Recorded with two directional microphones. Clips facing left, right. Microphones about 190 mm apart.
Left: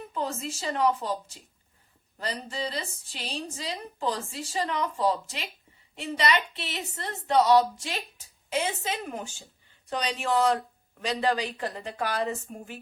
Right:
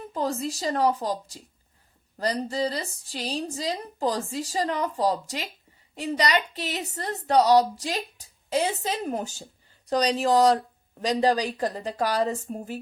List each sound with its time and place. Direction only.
0.1 s a woman's voice: 35° right (ahead or behind)